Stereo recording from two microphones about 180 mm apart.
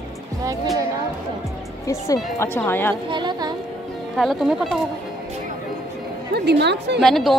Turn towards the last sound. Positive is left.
turn(degrees=0)  # may be behind; listen again after turning